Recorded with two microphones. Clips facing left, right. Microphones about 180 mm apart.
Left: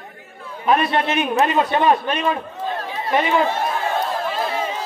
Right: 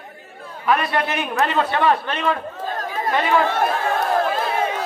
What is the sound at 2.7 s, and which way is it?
Chatter, 45° right (ahead or behind).